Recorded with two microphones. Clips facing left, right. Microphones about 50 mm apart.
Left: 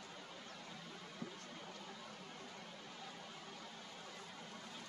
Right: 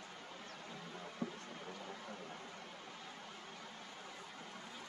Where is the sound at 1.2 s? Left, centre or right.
Right.